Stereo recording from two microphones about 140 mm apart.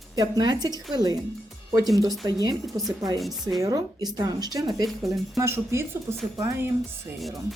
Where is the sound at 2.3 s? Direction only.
30° right (ahead or behind).